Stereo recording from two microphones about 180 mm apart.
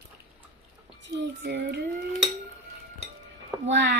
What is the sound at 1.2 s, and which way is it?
Speech, 70° right (ahead or behind).